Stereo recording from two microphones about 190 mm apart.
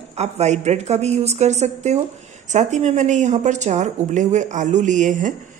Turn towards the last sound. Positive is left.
turn(degrees=-40)  # may be behind; listen again after turning